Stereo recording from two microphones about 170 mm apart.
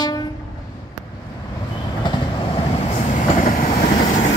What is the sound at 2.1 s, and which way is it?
Vehicle, 25° left (ahead or behind).